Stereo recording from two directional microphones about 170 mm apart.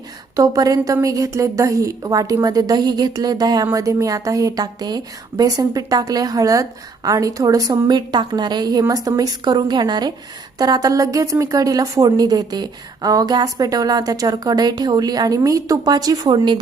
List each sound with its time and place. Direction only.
0.3 s a woman's voice: 20° right (ahead or behind)